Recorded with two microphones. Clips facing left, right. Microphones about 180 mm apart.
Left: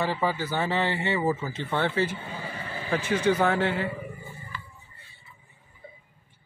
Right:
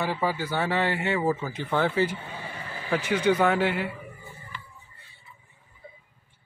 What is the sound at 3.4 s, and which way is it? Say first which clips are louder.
Speech: right 1 dB; 10° right (ahead or behind).